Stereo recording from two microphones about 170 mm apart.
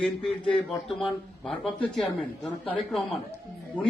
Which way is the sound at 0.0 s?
5° left (ahead or behind).